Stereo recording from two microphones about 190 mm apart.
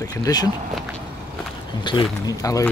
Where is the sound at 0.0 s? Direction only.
20° left (ahead or behind).